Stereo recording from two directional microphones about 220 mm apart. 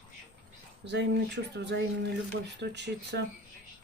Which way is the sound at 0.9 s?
50° right (ahead or behind).